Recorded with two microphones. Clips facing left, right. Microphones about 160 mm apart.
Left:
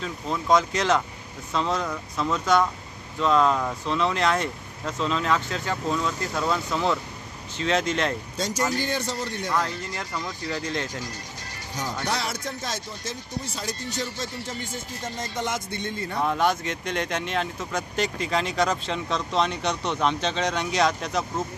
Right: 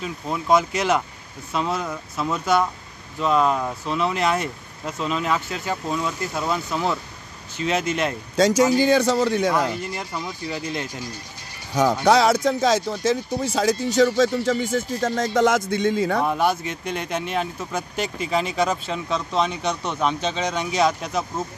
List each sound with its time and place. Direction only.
0.0 s speech: 10° right (ahead or behind)
8.4 s speech: 90° right
9.5 s speech: 10° right (ahead or behind)
11.7 s speech: 90° right
16.3 s speech: 10° right (ahead or behind)